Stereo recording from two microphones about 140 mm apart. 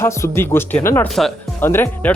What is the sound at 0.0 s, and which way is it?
Speech, 20° left (ahead or behind).